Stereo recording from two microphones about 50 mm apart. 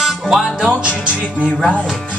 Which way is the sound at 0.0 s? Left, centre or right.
Centre.